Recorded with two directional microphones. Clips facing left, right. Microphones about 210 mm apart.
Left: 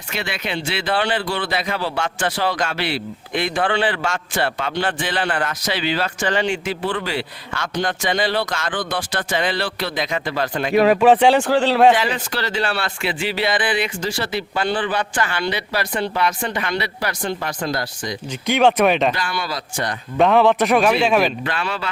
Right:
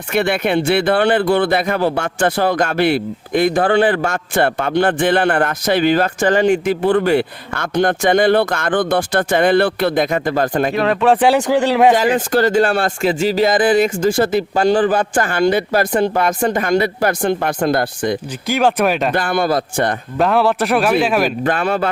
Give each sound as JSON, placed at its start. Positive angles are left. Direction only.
{"t": 0.1, "sound": "speech", "side_deg": -55}
{"t": 11.0, "sound": "speech", "side_deg": 0}
{"t": 11.9, "sound": "speech", "side_deg": -50}
{"t": 18.4, "sound": "speech", "side_deg": 0}
{"t": 19.1, "sound": "speech", "side_deg": -50}
{"t": 20.1, "sound": "speech", "side_deg": 0}
{"t": 21.4, "sound": "speech", "side_deg": -50}